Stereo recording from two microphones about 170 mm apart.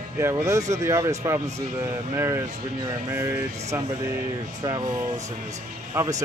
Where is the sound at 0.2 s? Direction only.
15° right (ahead or behind).